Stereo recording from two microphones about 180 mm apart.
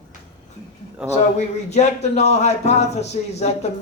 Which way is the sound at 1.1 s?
40° left (ahead or behind).